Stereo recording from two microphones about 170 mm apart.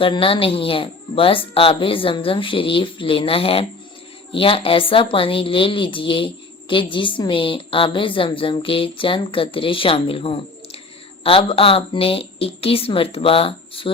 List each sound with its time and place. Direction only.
0.0 s a woman's voice: 30° left (ahead or behind)